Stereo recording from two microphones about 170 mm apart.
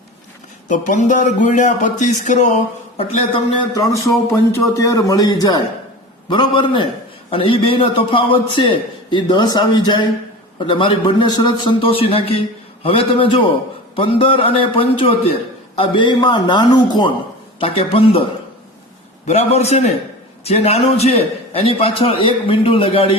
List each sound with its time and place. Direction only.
0.7 s speech: 45° left (ahead or behind)
3.0 s a man's voice: 35° left (ahead or behind)
3.9 s a man's voice: 15° left (ahead or behind); by 18.3 s 30° left (ahead or behind)
19.3 s a man's voice: 40° left (ahead or behind)